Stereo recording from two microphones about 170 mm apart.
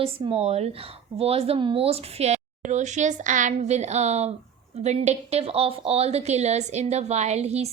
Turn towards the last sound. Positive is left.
turn(degrees=-40)  # may be behind; listen again after turning